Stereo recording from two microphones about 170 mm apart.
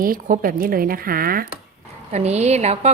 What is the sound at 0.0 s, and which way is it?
Speech, 55° right (ahead or behind).